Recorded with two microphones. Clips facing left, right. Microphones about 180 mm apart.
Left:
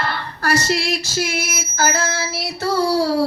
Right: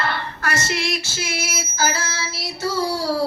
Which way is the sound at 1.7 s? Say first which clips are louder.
Left 4 dB; 50° left (ahead or behind).